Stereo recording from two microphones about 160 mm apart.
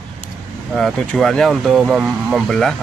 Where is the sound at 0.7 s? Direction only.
Centre (ahead or behind).